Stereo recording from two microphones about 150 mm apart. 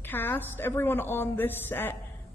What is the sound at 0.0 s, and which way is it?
A woman's voice, 15° left (ahead or behind).